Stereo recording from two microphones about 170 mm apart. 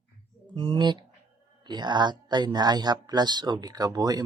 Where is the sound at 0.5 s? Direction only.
30° right (ahead or behind).